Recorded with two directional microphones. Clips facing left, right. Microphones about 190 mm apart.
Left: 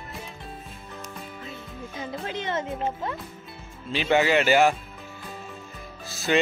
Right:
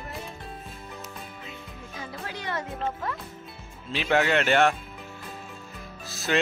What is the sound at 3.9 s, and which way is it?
Music, centre (ahead or behind).